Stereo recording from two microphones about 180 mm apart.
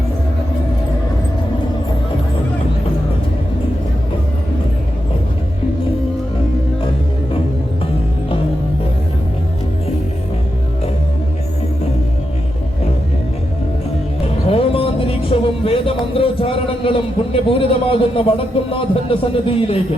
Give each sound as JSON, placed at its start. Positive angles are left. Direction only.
{"t": 14.4, "sound": "music", "side_deg": 30}
{"t": 16.1, "sound": "a man's voice", "side_deg": 30}